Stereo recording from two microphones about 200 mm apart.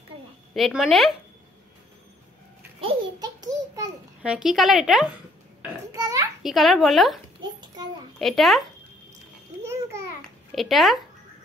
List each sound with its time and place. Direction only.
0.6 s a woman's voice: centre (ahead or behind)
2.8 s a sound: 25° right (ahead or behind)
4.2 s a woman's voice: 5° right (ahead or behind)
5.9 s a sound: 15° right (ahead or behind)
6.4 s a woman's voice: centre (ahead or behind)
8.2 s a woman's voice: centre (ahead or behind)
9.6 s babbling: 15° right (ahead or behind)
10.5 s a woman's voice: centre (ahead or behind)